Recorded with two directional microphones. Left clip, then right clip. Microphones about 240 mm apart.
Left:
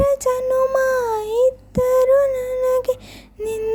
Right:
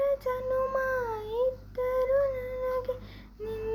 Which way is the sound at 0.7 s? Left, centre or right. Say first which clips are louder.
Left 11 dB; left.